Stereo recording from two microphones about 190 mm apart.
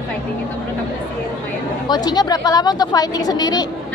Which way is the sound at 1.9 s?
20° left (ahead or behind).